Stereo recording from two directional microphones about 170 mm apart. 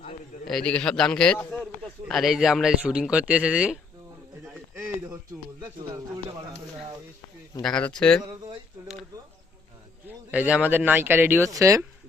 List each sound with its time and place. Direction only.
0.0 s a sound: 40° left (ahead or behind)
0.4 s speech: 5° left (ahead or behind)
7.6 s speech: 5° left (ahead or behind)
10.1 s speech: 10° right (ahead or behind)